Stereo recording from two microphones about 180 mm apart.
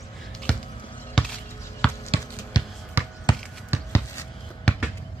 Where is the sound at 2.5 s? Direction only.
25° left (ahead or behind).